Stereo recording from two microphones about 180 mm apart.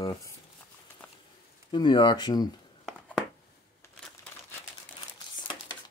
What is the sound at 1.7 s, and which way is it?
Speech, 25° left (ahead or behind).